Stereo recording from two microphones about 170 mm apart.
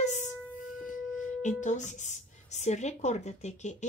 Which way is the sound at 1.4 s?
45° left (ahead or behind).